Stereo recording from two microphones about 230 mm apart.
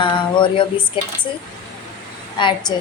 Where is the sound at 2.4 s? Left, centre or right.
Left.